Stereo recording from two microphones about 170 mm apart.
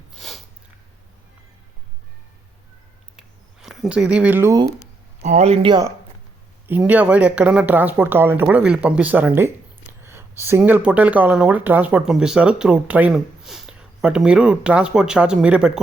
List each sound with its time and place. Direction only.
0.1 s snort: centre (ahead or behind)
3.2 s a sound: centre (ahead or behind)
5.2 s speech: 40° right (ahead or behind)
6.7 s speech: 10° right (ahead or behind)